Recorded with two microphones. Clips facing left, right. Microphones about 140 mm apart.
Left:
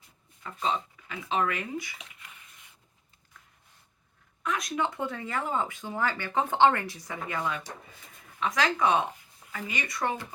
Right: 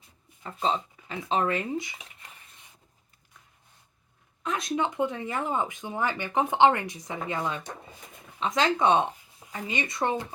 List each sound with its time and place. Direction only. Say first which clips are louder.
0.4 s speech: right 2 dB; 30° right (ahead or behind)
2.0 s a sound: right 1 dB; 35° right (ahead or behind)
4.4 s speech: right 2 dB; 25° right (ahead or behind)